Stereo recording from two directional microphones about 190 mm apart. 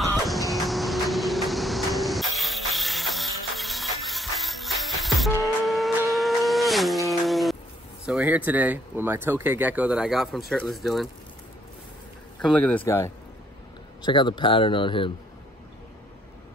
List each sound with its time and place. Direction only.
0.0 s vehicle: centre (ahead or behind)
5.4 s a sound: centre (ahead or behind)
8.0 s speech: 5° right (ahead or behind)
12.4 s a man's voice: 5° left (ahead or behind)
14.0 s speech: 25° left (ahead or behind)